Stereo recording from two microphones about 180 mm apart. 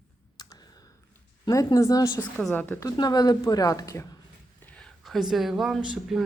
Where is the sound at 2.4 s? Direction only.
5° left (ahead or behind).